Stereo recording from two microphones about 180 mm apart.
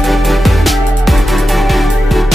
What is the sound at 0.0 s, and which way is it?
Music, centre (ahead or behind).